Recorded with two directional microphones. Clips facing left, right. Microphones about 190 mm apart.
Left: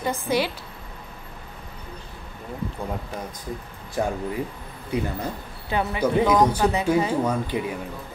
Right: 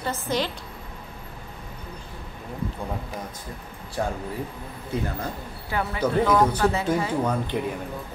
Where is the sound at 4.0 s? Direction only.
15° left (ahead or behind).